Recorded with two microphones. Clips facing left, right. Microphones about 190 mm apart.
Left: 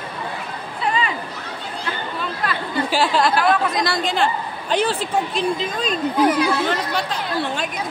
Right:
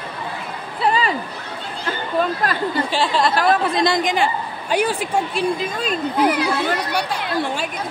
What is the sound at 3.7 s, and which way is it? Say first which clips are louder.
Speech: right 3 dB; 20° right (ahead or behind).